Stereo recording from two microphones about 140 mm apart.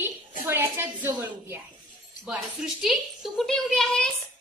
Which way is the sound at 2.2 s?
5° right (ahead or behind).